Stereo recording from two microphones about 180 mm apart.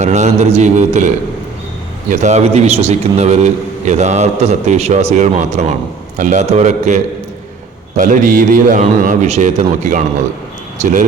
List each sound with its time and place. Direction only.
0.0 s a man's voice: 40° right (ahead or behind)